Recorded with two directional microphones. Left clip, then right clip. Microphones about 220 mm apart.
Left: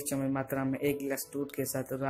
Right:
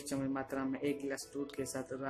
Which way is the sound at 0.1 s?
15° left (ahead or behind).